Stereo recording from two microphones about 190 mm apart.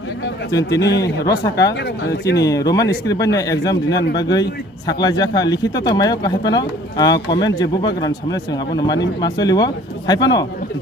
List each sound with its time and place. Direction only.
0.7 s a man's voice: 65° left (ahead or behind)
1.0 s speech: 20° left (ahead or behind)